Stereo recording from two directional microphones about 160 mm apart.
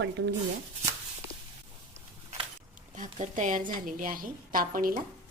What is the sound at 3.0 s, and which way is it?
A woman's voice, 50° right (ahead or behind).